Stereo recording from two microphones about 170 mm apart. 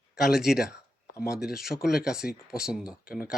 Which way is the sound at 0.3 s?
Centre (ahead or behind).